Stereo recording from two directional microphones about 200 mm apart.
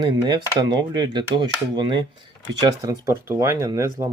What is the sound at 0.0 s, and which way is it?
Speech, 20° right (ahead or behind).